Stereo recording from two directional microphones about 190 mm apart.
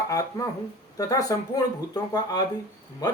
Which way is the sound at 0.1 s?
15° left (ahead or behind).